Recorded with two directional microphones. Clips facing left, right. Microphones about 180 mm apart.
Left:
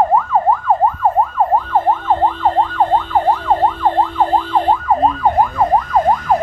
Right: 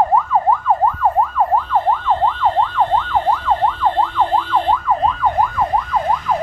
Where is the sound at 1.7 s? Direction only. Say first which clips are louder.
Left 2 dB; 45° left (ahead or behind).